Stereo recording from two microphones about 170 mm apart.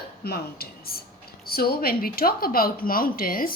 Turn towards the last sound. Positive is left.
turn(degrees=60)  # may be behind; listen again after turning